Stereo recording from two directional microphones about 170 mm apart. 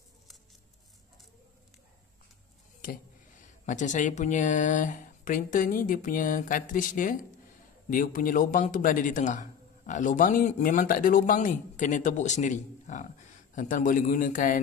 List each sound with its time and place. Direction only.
2.8 s speech: 50° left (ahead or behind)